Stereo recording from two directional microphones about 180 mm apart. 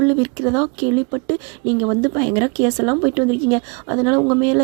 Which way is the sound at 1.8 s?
20° right (ahead or behind).